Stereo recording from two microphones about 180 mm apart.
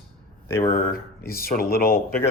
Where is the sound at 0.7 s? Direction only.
55° left (ahead or behind).